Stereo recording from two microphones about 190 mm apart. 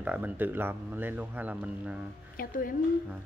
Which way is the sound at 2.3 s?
50° left (ahead or behind).